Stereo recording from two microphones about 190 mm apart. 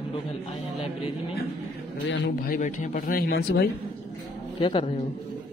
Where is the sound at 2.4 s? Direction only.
45° left (ahead or behind).